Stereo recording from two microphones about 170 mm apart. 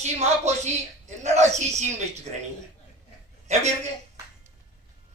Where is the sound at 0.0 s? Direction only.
40° right (ahead or behind).